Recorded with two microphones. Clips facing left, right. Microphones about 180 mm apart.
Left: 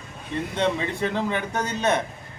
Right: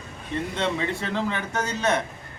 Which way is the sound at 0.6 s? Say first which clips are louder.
Left 4 dB; 15° left (ahead or behind).